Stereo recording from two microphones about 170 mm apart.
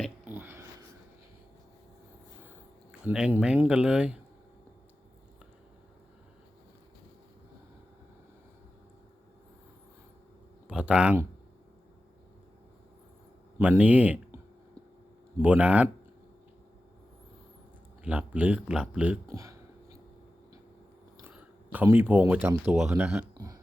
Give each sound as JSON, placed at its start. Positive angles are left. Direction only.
{"t": 0.3, "sound": "a sound", "side_deg": -10}
{"t": 3.0, "sound": "speech", "side_deg": -5}
{"t": 10.7, "sound": "speech", "side_deg": -5}
{"t": 13.6, "sound": "speech", "side_deg": -10}
{"t": 15.4, "sound": "speech", "side_deg": -5}
{"t": 18.0, "sound": "speech", "side_deg": -10}
{"t": 21.2, "sound": "a sound", "side_deg": -10}
{"t": 22.3, "sound": "speech", "side_deg": -10}